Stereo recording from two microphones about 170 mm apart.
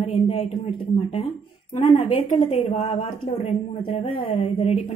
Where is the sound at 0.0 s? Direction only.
35° left (ahead or behind).